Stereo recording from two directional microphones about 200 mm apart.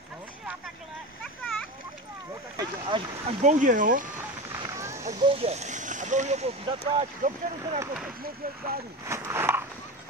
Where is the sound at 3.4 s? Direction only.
40° right (ahead or behind).